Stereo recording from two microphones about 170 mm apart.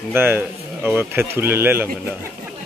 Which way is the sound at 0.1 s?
10° right (ahead or behind).